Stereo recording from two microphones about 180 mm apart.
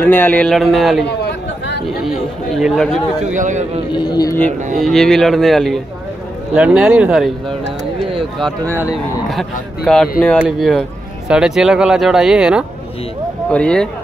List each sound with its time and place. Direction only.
0.0 s speech: 10° left (ahead or behind)
1.0 s chatter: 65° left (ahead or behind)
2.0 s speech: centre (ahead or behind)
3.3 s speech: 40° right (ahead or behind)
3.9 s a man's voice: 25° left (ahead or behind)
4.8 s speech: centre (ahead or behind)